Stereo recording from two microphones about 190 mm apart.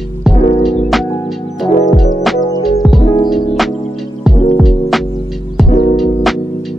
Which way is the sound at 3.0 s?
20° left (ahead or behind).